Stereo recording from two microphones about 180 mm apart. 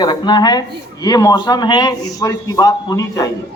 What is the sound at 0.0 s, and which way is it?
A man's voice, 25° left (ahead or behind).